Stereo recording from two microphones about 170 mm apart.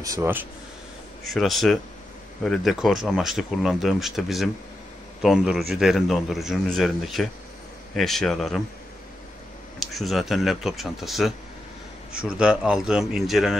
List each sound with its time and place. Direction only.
0.0 s speech: 15° right (ahead or behind)
1.3 s a man's voice: centre (ahead or behind)
9.8 s a man's voice: centre (ahead or behind)